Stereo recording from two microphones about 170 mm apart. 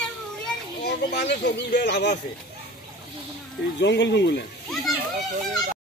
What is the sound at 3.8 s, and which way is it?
Speech, 90° left.